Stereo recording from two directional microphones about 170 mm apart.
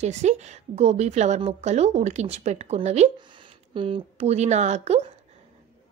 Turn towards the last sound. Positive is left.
turn(degrees=-40)  # may be behind; listen again after turning